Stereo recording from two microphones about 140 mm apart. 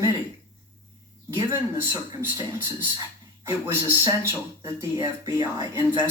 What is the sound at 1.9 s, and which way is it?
Speech, 15° right (ahead or behind).